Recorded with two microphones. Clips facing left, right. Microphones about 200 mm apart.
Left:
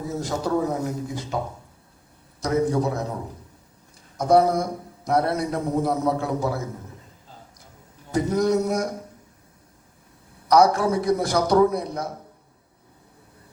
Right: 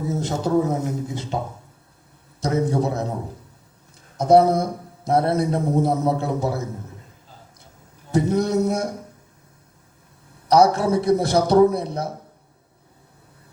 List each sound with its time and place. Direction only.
0.1 s a man's voice: 25° right (ahead or behind)
2.4 s a man's voice: 25° right (ahead or behind)
4.2 s a man's voice: 25° right (ahead or behind)
8.1 s a man's voice: 25° right (ahead or behind)
10.5 s a man's voice: 25° right (ahead or behind)